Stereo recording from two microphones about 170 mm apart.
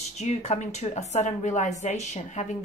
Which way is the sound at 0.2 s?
40° left (ahead or behind).